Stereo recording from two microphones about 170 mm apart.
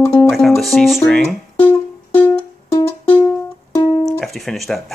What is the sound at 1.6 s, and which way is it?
Music, 10° left (ahead or behind).